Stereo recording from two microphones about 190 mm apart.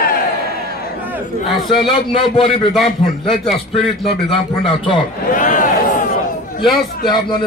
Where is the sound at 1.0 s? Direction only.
10° right (ahead or behind).